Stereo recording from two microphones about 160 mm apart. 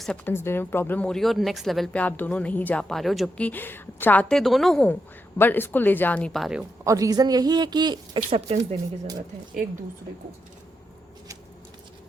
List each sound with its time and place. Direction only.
0.0 s speech: 10° left (ahead or behind)
6.8 s speech: 20° right (ahead or behind)